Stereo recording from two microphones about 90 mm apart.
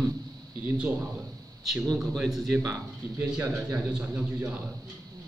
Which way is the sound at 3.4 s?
30° right (ahead or behind).